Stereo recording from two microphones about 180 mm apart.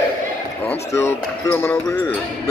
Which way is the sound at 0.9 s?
15° left (ahead or behind).